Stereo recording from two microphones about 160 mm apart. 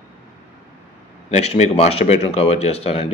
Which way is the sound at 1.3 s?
45° left (ahead or behind).